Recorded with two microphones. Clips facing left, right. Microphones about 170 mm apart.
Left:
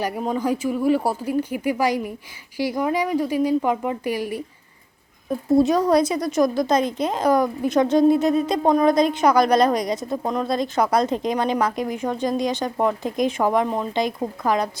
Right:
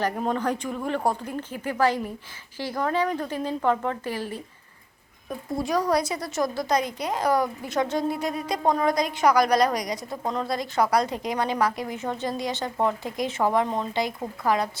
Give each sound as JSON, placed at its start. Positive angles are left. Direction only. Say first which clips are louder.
{"t": 0.0, "sound": "speech", "louder": "left 2 dB", "side_deg": 5}
{"t": 5.5, "sound": "a woman's voice", "louder": "left 7 dB", "side_deg": 25}